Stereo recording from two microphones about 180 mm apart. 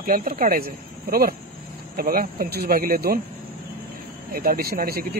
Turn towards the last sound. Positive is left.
turn(degrees=-55)  # may be behind; listen again after turning